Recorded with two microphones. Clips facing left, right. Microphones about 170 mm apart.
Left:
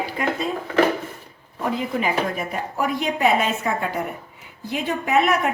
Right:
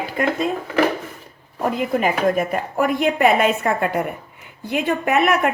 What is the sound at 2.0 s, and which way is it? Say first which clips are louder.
A woman's voice: right 8 dB; 50° right (ahead or behind).